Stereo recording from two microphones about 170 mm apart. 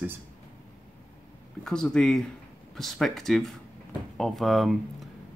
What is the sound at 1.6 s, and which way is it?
Speech, 5° left (ahead or behind).